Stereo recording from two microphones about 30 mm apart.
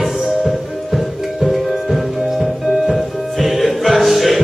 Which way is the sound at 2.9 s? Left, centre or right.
Centre.